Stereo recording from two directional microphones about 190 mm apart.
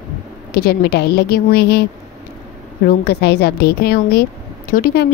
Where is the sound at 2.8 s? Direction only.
55° left (ahead or behind).